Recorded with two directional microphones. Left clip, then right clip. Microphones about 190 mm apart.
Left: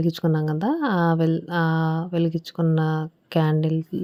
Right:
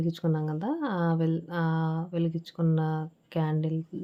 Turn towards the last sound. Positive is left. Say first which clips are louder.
# left 8 dB
turn(degrees=40)  # may be behind; listen again after turning